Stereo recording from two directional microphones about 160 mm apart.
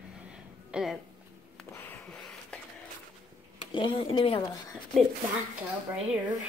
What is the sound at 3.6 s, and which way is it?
Speech, 30° left (ahead or behind).